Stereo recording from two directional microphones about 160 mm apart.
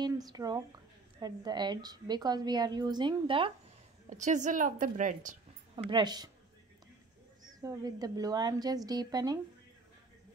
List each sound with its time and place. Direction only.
0.0 s a woman's voice: 25° right (ahead or behind)
4.1 s a woman's voice: 50° right (ahead or behind)
5.9 s a woman's voice: 30° right (ahead or behind)
7.4 s a woman's voice: 25° right (ahead or behind)